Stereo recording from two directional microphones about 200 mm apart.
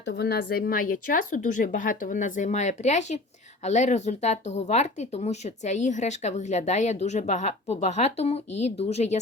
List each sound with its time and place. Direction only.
0.0 s speech: 55° left (ahead or behind); by 9.1 s 30° left (ahead or behind)